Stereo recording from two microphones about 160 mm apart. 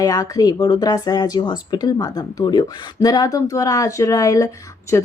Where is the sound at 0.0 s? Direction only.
20° left (ahead or behind).